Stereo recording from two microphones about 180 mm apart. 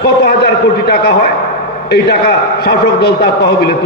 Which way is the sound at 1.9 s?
65° left (ahead or behind).